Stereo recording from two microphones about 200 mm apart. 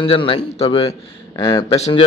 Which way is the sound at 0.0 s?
25° left (ahead or behind).